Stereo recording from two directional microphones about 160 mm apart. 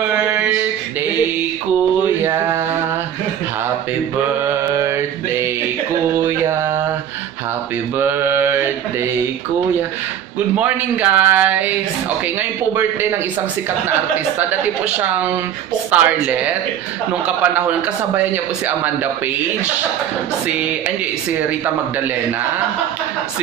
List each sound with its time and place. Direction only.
2.2 s mantra: 15° right (ahead or behind)
4.7 s mantra: 15° right (ahead or behind)
8.0 s mantra: 15° right (ahead or behind)
10.6 s speech: 10° right (ahead or behind)
15.9 s speech: 10° right (ahead or behind)
17.4 s speech: 10° right (ahead or behind)